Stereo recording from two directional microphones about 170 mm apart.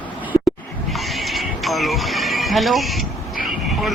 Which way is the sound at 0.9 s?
Centre (ahead or behind).